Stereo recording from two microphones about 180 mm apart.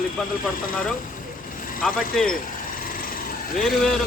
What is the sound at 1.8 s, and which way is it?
Speech, centre (ahead or behind).